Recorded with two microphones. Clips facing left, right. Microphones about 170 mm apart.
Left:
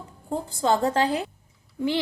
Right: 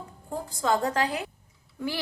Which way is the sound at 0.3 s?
30° left (ahead or behind).